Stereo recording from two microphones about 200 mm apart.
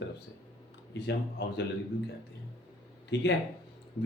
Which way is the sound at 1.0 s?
60° left (ahead or behind).